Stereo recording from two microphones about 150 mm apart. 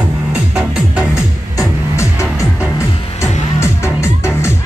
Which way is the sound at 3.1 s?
20° left (ahead or behind).